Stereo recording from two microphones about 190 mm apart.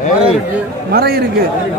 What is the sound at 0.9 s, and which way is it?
Speech, 55° right (ahead or behind).